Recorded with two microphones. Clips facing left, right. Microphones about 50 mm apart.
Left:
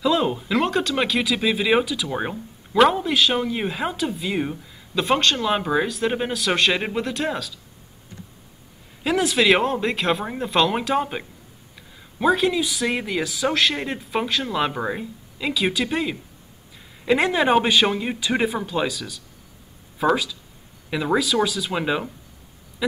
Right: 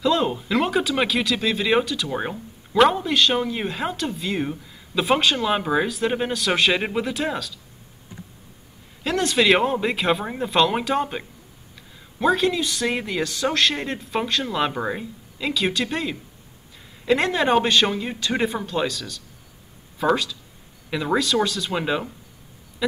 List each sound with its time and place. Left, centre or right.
0.0 s speech: centre
9.0 s speech: centre
22.8 s a sound: centre